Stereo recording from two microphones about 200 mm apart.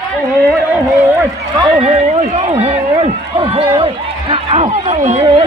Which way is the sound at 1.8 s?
30° right (ahead or behind).